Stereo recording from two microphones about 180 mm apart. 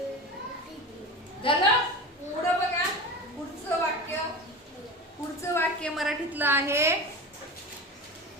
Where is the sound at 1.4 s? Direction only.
30° left (ahead or behind).